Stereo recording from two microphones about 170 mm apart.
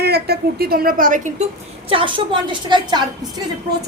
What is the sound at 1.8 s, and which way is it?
A woman's voice, 30° right (ahead or behind).